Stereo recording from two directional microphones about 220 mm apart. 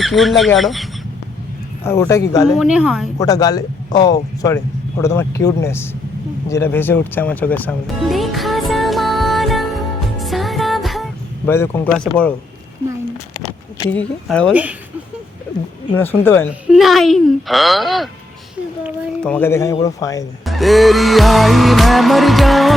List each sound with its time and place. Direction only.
0.0 s music: centre (ahead or behind)
1.8 s speech: 10° left (ahead or behind)
2.5 s music: centre (ahead or behind)
3.2 s speech: 15° left (ahead or behind)
6.5 s music: 10° left (ahead or behind)
11.5 s speech: 10° left (ahead or behind)
13.7 s music: 5° left (ahead or behind)
14.5 s speech: 5° right (ahead or behind)
16.0 s speech: 10° left (ahead or behind)
16.6 s music: centre (ahead or behind)
19.2 s speech: 10° left (ahead or behind)
20.4 s music: centre (ahead or behind)